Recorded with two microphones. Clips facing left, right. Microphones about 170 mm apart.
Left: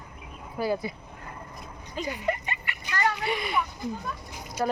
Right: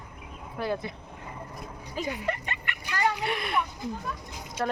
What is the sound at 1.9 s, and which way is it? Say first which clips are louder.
Speech: left 2 dB; centre (ahead or behind).